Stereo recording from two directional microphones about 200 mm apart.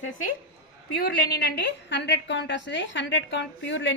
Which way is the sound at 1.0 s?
55° left (ahead or behind).